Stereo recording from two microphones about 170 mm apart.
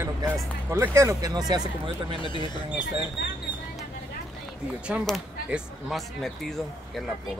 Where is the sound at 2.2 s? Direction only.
30° left (ahead or behind).